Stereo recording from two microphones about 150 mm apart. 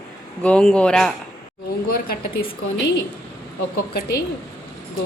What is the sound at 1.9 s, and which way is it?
Speech, 90° left.